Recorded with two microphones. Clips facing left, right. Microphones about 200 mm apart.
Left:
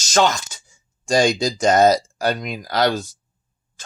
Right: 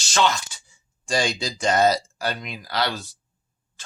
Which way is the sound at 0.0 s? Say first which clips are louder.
Left 4 dB; 45° left (ahead or behind).